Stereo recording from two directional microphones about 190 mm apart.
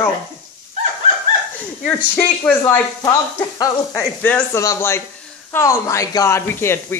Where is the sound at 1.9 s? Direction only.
10° left (ahead or behind).